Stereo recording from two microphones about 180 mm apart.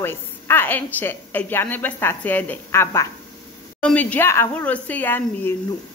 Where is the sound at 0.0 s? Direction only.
10° left (ahead or behind).